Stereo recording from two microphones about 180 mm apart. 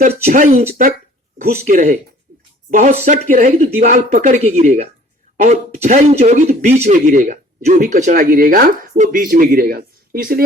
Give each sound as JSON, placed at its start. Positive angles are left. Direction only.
{"t": 0.3, "sound": "speech", "side_deg": -55}
{"t": 1.6, "sound": "speech", "side_deg": -45}